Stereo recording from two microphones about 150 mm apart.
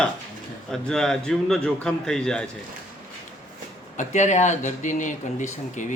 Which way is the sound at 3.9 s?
55° left (ahead or behind).